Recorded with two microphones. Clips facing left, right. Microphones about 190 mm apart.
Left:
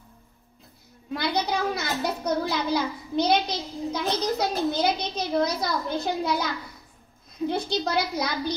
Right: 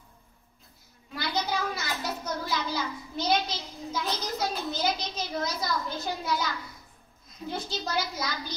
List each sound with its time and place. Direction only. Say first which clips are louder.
1.1 s a child's voice: left 4 dB; 60° left (ahead or behind)